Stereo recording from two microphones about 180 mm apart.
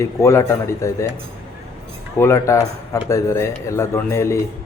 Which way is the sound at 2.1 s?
15° left (ahead or behind).